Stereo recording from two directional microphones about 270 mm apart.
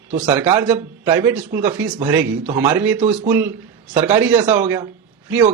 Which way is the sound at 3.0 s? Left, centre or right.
Right.